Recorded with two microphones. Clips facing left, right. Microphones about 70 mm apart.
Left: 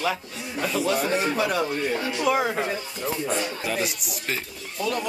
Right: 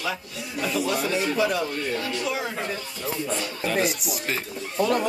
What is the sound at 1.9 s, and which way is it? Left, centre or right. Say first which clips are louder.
Speech: left 1 dB; centre.